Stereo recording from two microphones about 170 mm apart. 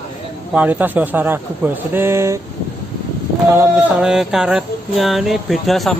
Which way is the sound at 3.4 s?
10° right (ahead or behind).